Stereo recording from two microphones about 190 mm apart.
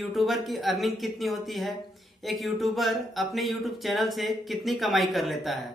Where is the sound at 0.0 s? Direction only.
Centre (ahead or behind).